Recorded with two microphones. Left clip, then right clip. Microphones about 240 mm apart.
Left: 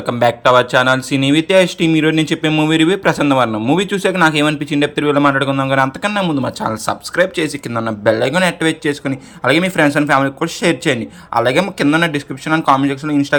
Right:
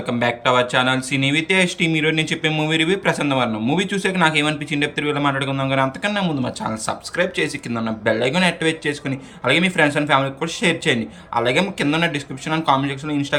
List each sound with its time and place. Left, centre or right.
0.0 s speech: left